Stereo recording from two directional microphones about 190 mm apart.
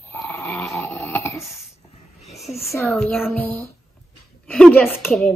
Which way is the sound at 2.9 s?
5° left (ahead or behind).